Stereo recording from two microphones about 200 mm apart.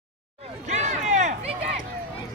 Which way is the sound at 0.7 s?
35° right (ahead or behind).